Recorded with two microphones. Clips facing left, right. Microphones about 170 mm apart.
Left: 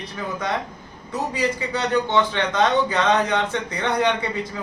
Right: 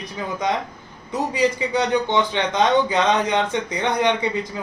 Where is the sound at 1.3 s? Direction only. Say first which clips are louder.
Right 5 dB; 15° right (ahead or behind).